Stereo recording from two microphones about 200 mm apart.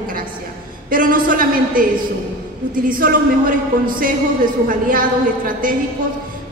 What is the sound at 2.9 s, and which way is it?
Speech, 45° right (ahead or behind).